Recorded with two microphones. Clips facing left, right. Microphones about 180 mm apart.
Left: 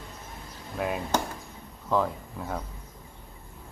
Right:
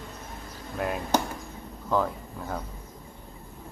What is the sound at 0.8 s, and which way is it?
Speech, centre (ahead or behind).